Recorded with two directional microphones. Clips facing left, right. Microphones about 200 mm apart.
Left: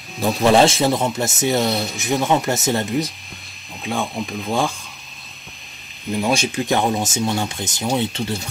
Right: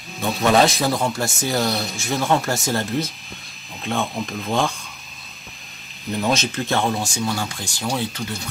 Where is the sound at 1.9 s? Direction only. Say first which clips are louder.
Left 2 dB; 20° left (ahead or behind).